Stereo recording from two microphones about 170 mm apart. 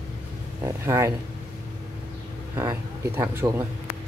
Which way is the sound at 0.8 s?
15° right (ahead or behind).